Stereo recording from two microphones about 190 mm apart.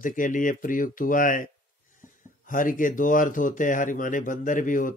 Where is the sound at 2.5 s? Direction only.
45° left (ahead or behind).